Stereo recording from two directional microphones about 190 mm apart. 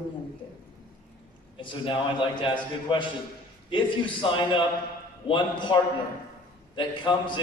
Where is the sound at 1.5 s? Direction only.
25° left (ahead or behind).